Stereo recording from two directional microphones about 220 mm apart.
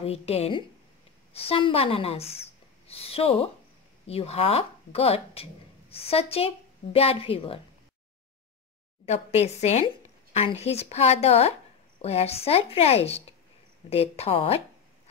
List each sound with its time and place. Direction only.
0.0 s speech: 25° left (ahead or behind)
9.0 s speech: 30° left (ahead or behind)